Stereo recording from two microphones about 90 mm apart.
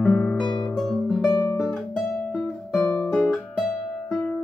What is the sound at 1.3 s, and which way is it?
Guitar, 40° left (ahead or behind).